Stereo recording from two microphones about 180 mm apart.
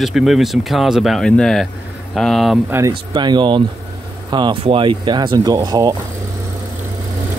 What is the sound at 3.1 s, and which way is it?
Speech, 25° right (ahead or behind).